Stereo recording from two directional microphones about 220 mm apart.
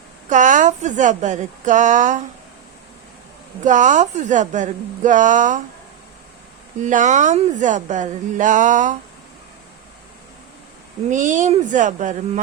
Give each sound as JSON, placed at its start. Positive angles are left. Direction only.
{"t": 0.3, "sound": "speech", "side_deg": -35}
{"t": 3.6, "sound": "speech", "side_deg": -35}
{"t": 6.8, "sound": "speech", "side_deg": -35}
{"t": 11.1, "sound": "speech", "side_deg": -35}